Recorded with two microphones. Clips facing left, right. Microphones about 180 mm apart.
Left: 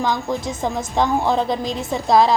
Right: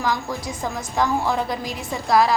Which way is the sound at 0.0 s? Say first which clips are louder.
Left 3 dB; 25° left (ahead or behind).